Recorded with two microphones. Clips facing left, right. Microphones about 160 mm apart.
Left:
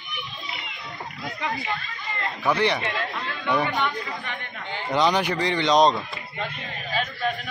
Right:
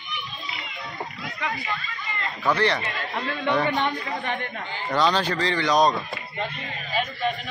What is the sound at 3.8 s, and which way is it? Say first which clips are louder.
Speech: right 2 dB; 40° right (ahead or behind).